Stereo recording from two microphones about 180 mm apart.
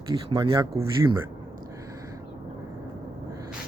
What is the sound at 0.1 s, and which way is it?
Speech, 25° right (ahead or behind).